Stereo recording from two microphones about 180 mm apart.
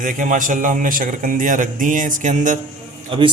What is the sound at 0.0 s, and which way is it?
A man's voice, 45° right (ahead or behind).